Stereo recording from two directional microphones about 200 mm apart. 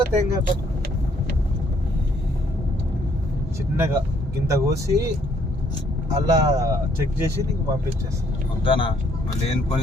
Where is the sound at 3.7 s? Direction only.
15° right (ahead or behind).